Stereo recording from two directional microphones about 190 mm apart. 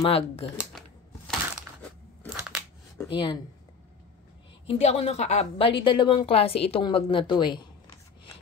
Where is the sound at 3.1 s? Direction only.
25° left (ahead or behind).